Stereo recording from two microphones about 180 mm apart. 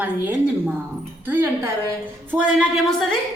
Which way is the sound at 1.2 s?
10° right (ahead or behind).